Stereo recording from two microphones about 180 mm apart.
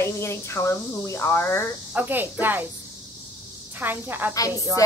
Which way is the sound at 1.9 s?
10° right (ahead or behind).